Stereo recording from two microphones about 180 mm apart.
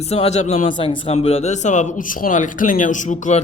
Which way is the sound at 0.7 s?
25° left (ahead or behind).